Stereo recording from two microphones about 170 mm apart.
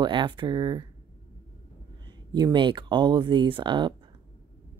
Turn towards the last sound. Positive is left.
turn(degrees=-25)  # may be behind; listen again after turning